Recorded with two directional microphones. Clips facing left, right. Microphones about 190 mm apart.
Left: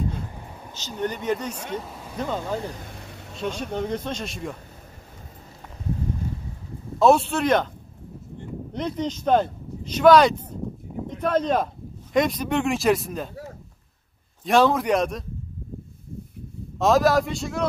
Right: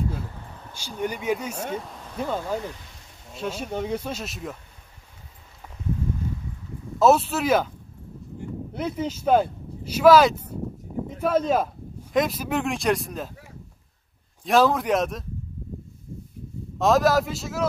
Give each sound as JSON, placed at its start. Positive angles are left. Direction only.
{"t": 0.7, "sound": "speech", "side_deg": -10}
{"t": 1.8, "sound": "speech", "side_deg": 5}
{"t": 2.1, "sound": "speech", "side_deg": -5}
{"t": 2.8, "sound": "vehicle", "side_deg": 60}
{"t": 3.3, "sound": "speech", "side_deg": -5}
{"t": 7.0, "sound": "speech", "side_deg": 0}
{"t": 8.4, "sound": "a sound", "side_deg": -5}
{"t": 11.1, "sound": "speech", "side_deg": -5}
{"t": 14.4, "sound": "speech", "side_deg": 0}
{"t": 16.7, "sound": "speech", "side_deg": 0}